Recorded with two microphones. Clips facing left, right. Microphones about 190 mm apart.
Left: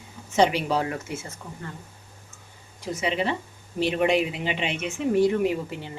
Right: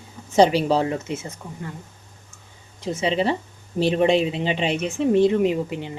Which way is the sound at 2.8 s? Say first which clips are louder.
Right 4 dB; 25° right (ahead or behind).